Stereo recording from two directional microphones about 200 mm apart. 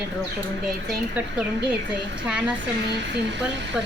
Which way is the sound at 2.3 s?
5° right (ahead or behind).